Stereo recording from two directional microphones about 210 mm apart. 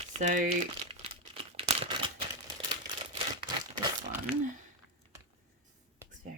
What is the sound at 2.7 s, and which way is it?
Crumpling, 20° right (ahead or behind).